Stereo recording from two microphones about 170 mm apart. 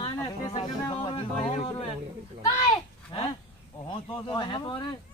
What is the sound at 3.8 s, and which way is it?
Speech, 30° left (ahead or behind).